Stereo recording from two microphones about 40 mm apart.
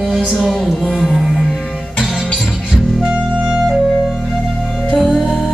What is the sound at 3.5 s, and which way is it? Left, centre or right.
Music, centre.